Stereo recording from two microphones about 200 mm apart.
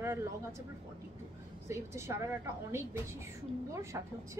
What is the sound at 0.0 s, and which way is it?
Speech, 15° right (ahead or behind).